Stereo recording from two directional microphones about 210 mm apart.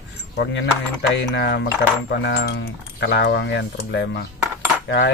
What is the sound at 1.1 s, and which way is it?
Speech, 55° left (ahead or behind).